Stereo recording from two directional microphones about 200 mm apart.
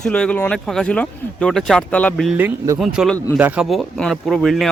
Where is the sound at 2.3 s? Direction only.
15° right (ahead or behind).